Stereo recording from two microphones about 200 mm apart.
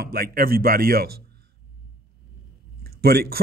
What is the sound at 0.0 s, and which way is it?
A man's voice, 50° right (ahead or behind).